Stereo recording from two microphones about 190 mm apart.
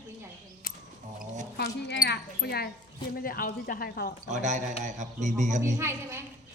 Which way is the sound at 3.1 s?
50° left (ahead or behind).